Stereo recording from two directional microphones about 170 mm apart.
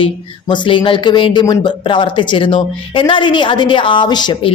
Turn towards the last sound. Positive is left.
turn(degrees=25)  # may be behind; listen again after turning